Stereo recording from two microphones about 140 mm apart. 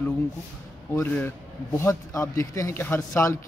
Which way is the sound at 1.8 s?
20° left (ahead or behind).